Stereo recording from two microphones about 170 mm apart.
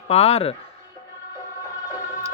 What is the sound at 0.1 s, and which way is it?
Speech, 35° left (ahead or behind).